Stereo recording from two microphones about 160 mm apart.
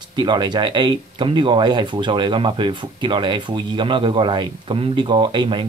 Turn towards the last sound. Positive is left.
turn(degrees=-30)  # may be behind; listen again after turning